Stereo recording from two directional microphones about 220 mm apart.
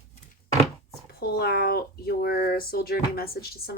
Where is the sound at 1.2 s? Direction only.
45° left (ahead or behind).